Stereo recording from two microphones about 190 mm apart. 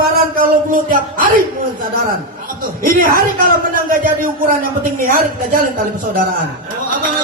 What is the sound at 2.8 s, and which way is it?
A man's voice, 50° right (ahead or behind).